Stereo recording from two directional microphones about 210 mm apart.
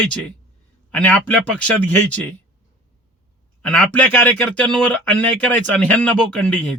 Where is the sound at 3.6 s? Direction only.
5° left (ahead or behind).